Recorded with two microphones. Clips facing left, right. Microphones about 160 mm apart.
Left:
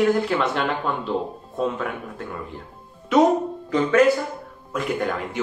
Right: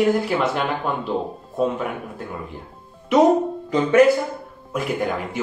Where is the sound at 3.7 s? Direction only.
15° right (ahead or behind).